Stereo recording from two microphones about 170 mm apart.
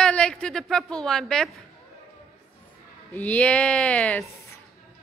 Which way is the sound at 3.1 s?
10° left (ahead or behind).